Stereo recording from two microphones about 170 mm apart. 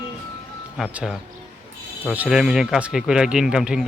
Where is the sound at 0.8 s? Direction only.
Centre (ahead or behind).